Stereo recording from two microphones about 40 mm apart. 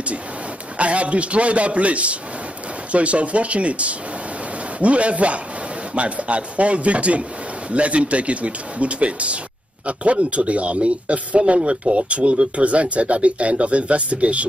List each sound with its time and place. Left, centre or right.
0.7 s a man's voice: right